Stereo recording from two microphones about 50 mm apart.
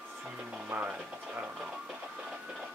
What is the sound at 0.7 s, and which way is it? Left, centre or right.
Speech, right.